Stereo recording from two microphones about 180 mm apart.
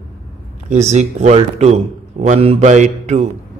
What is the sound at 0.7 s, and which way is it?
A man's voice, 40° right (ahead or behind).